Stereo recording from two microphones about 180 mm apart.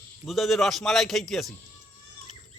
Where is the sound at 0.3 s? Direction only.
Centre (ahead or behind).